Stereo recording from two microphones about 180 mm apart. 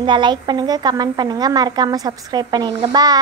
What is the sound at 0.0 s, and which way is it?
A child's voice, 25° right (ahead or behind).